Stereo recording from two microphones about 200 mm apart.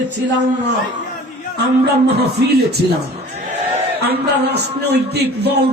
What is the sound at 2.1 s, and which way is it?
Speech, 55° right (ahead or behind).